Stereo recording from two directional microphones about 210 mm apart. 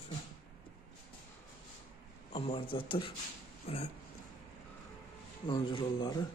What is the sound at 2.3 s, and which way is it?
A man's voice, 25° left (ahead or behind).